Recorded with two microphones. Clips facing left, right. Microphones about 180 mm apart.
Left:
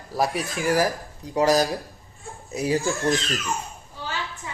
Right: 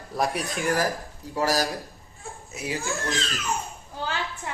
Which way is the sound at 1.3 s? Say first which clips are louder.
Left 5 dB; 20° left (ahead or behind).